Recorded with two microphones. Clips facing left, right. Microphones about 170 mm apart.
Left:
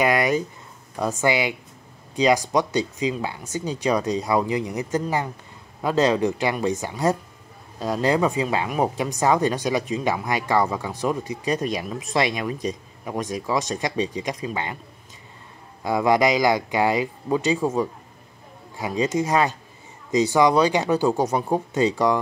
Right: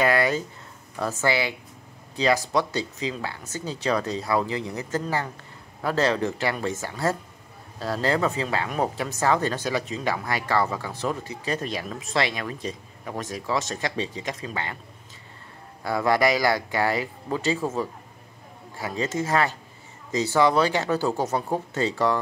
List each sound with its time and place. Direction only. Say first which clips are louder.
0.0 s speech: left 2 dB; 15° left (ahead or behind)
15.8 s speech: left 3 dB; 15° left (ahead or behind)